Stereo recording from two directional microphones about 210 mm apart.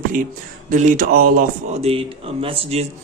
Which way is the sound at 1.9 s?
30° right (ahead or behind).